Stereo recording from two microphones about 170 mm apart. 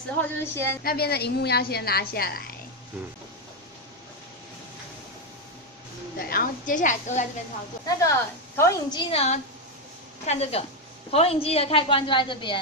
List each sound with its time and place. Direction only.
0.2 s a woman's voice: 15° left (ahead or behind)
0.8 s a woman's voice: 65° left (ahead or behind)
6.1 s a woman's voice: 60° left (ahead or behind)
8.0 s a woman's voice: 15° left (ahead or behind)
9.0 s a woman's voice: 35° left (ahead or behind)